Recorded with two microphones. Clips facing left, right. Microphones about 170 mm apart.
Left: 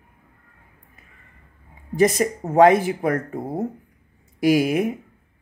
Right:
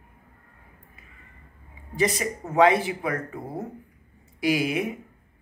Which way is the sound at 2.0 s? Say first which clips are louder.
Left 7 dB; 45° left (ahead or behind).